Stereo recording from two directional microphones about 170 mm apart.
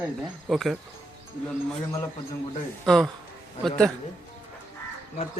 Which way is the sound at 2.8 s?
Centre (ahead or behind).